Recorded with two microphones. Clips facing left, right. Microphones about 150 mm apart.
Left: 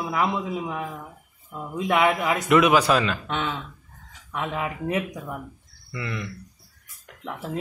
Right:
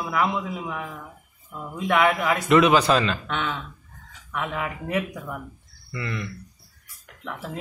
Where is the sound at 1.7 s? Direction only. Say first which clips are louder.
Even; 20° left (ahead or behind).